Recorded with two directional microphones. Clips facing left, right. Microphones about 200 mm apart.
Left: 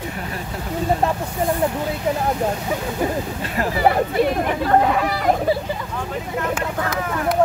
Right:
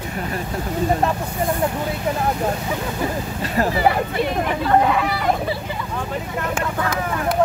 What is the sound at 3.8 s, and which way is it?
Speech, 45° left (ahead or behind).